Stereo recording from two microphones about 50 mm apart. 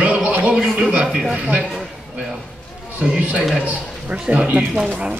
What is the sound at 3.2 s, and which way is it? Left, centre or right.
Speech, right.